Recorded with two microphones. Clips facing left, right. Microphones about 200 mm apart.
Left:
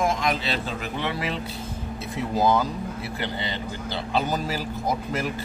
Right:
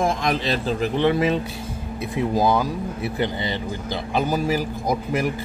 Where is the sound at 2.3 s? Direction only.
15° right (ahead or behind).